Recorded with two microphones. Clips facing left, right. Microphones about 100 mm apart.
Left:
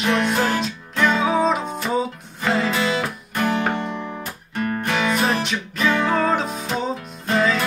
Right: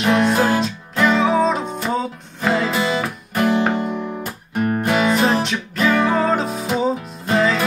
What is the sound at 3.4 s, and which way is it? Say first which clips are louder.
Music: right 4 dB; 5° right (ahead or behind).